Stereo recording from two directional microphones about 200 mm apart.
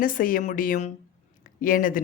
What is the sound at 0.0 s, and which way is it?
Speech, 45° left (ahead or behind).